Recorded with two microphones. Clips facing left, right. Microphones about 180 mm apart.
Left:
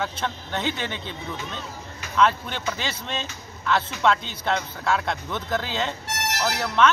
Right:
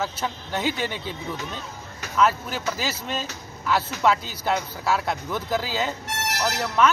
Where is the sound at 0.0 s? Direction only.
5° right (ahead or behind).